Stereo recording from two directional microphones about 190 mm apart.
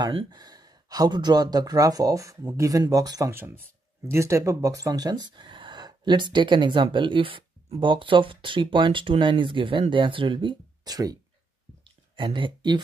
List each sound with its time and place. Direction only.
0.0 s speech: 25° right (ahead or behind)
12.2 s speech: 25° right (ahead or behind)